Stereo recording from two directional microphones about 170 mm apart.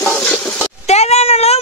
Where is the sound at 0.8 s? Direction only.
40° left (ahead or behind).